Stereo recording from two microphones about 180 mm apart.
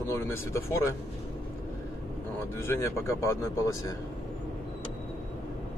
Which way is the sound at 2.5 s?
15° left (ahead or behind).